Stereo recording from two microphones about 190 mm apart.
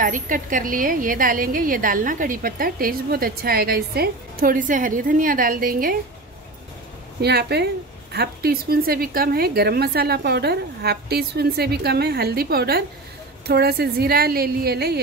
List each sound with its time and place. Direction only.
0.0 s a woman's voice: 45° right (ahead or behind)
7.2 s a woman's voice: 60° right (ahead or behind)